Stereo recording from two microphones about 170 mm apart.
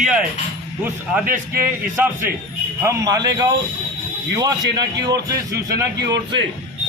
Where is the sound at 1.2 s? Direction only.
55° right (ahead or behind).